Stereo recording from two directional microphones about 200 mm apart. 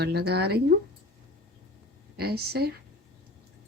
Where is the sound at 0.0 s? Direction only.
55° right (ahead or behind).